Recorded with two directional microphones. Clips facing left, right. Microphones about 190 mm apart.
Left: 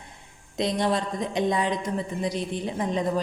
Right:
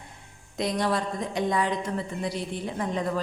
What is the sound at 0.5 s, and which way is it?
A woman's voice, 20° left (ahead or behind).